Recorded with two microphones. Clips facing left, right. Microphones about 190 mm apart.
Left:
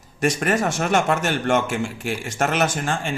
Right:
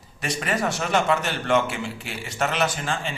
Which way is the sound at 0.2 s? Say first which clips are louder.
Left 5 dB; 45° left (ahead or behind).